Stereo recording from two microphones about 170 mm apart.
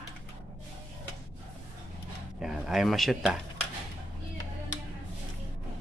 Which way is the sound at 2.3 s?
Centre (ahead or behind).